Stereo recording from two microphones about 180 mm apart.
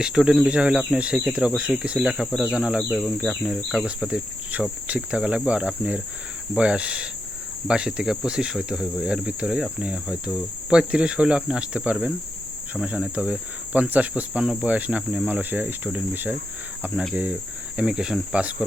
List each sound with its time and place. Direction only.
0.0 s speech: 5° right (ahead or behind)